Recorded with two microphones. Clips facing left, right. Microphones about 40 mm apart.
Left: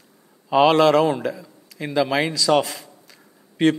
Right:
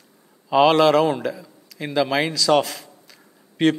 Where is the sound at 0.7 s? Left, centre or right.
Right.